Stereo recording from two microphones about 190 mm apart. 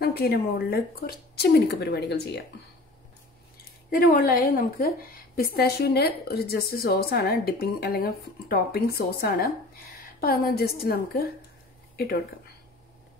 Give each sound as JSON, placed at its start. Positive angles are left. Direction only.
{"t": 0.0, "sound": "a woman's voice", "side_deg": 55}
{"t": 3.9, "sound": "a woman's voice", "side_deg": 50}